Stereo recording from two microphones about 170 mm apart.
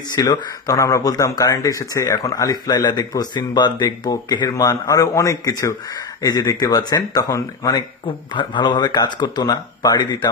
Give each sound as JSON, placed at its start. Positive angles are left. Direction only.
{"t": 0.1, "sound": "speech", "side_deg": 25}